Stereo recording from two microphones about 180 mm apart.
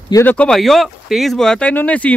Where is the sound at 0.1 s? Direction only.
10° left (ahead or behind).